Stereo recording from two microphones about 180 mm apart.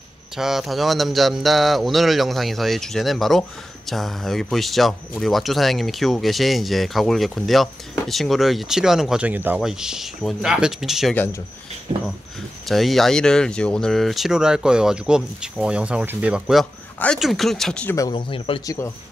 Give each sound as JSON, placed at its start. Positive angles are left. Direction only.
{"t": 0.4, "sound": "speech", "side_deg": 0}
{"t": 12.6, "sound": "speech", "side_deg": 0}
{"t": 17.9, "sound": "speech", "side_deg": 25}
{"t": 18.8, "sound": "speech", "side_deg": 15}